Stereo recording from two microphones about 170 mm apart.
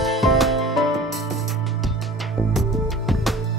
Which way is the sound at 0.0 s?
Centre (ahead or behind).